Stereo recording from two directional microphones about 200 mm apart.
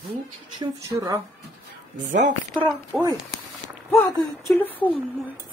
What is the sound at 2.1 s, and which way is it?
Speech, 40° right (ahead or behind).